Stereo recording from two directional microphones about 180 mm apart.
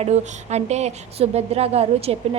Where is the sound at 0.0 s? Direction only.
40° right (ahead or behind).